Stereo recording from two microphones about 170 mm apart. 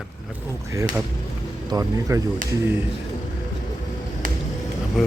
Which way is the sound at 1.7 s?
20° right (ahead or behind).